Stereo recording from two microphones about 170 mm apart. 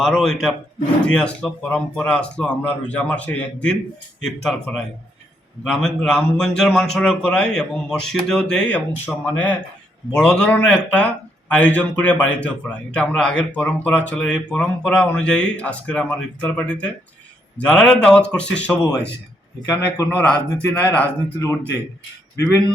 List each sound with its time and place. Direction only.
0.0 s a man's voice: centre (ahead or behind)
19.6 s a man's voice: 20° left (ahead or behind)
20.1 s speech: 10° left (ahead or behind)
22.4 s speech: 15° right (ahead or behind)